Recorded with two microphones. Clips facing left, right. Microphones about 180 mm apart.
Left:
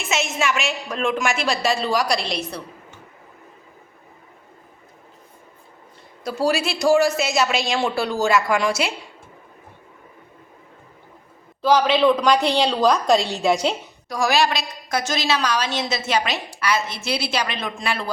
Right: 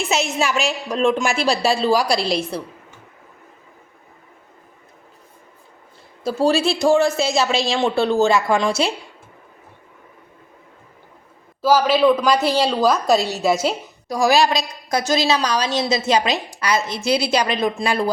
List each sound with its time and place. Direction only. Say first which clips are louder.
0.0 s a woman's voice: right 3 dB; 35° right (ahead or behind)
6.2 s speech: right 4 dB; 30° right (ahead or behind)
11.6 s a woman's voice: right 2 dB; 5° right (ahead or behind)
14.1 s a woman's voice: right 4 dB; 35° right (ahead or behind)
14.4 s a woman's voice: right 3 dB; 15° right (ahead or behind)
15.0 s a woman's voice: right 5 dB; 35° right (ahead or behind)
17.1 s a woman's voice: right 7 dB; 15° right (ahead or behind)
17.4 s a woman's voice: right 6 dB; 35° right (ahead or behind)